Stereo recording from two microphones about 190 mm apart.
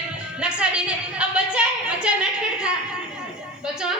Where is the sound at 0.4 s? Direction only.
5° right (ahead or behind).